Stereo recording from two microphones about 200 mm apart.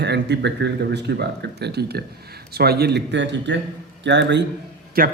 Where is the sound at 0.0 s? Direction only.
60° right (ahead or behind).